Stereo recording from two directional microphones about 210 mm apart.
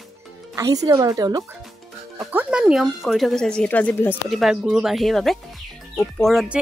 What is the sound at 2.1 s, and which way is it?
Speech, 5° right (ahead or behind).